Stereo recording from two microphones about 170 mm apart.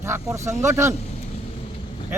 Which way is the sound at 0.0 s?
15° right (ahead or behind).